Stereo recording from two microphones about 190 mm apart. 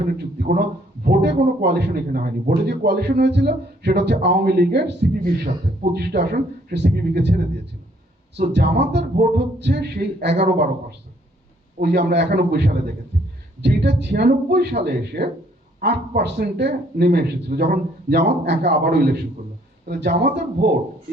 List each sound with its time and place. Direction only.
0.3 s speech: 50° right (ahead or behind)
1.0 s a man's voice: 60° right (ahead or behind)
2.6 s a man's voice: 60° right (ahead or behind)
9.2 s a man's voice: 55° right (ahead or behind)
11.8 s a man's voice: 60° right (ahead or behind)